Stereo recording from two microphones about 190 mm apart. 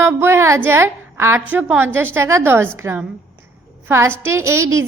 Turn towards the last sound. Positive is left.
turn(degrees=-15)  # may be behind; listen again after turning